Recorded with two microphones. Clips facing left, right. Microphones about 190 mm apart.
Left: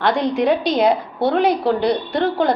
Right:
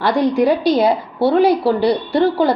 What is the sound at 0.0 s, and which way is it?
Speech, 10° right (ahead or behind).